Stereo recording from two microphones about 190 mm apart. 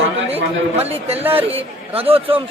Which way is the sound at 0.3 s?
30° right (ahead or behind).